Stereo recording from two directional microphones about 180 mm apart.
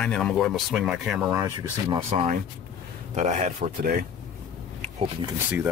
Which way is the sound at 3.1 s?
45° right (ahead or behind).